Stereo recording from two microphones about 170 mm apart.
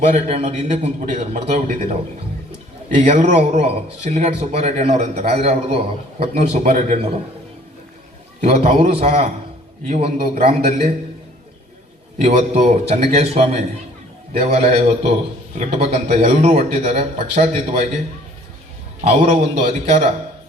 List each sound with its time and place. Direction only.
0.0 s speech: 40° right (ahead or behind)
8.4 s speech: 40° right (ahead or behind)
12.2 s speech: 40° right (ahead or behind)
19.0 s speech: 40° right (ahead or behind)